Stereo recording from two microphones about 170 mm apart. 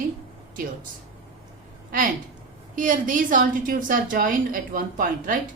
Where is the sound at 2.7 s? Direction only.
50° right (ahead or behind).